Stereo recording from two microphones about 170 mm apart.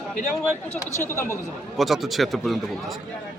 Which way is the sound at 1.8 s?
Centre (ahead or behind).